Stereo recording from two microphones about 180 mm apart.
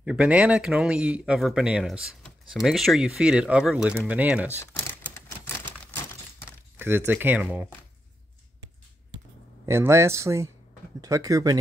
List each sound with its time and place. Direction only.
0.0 s speech: 5° right (ahead or behind)
4.6 s typewriter: 15° left (ahead or behind)
6.8 s speech: 10° right (ahead or behind)
9.7 s speech: 15° right (ahead or behind)